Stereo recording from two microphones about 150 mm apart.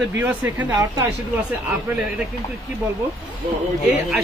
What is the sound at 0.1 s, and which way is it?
Speech, 15° right (ahead or behind).